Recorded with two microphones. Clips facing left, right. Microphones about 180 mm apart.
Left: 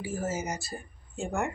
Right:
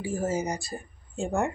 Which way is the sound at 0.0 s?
30° right (ahead or behind).